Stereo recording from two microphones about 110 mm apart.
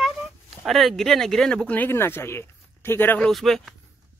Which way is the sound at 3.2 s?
5° left (ahead or behind).